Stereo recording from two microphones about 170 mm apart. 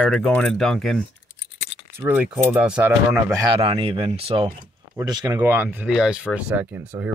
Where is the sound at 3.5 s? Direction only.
35° right (ahead or behind).